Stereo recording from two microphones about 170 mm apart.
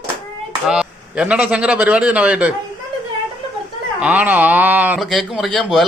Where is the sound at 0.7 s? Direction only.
5° right (ahead or behind).